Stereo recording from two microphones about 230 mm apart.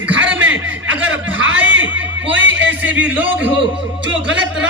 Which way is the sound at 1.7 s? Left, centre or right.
Right.